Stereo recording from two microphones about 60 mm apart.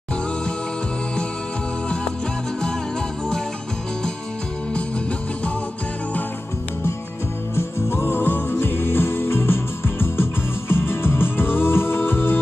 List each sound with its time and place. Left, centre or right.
7.5 s music: left